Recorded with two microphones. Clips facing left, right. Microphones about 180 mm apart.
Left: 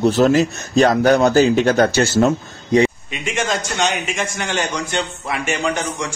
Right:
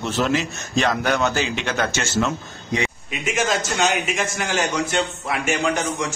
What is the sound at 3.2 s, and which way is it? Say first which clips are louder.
A man's voice: even; centre (ahead or behind).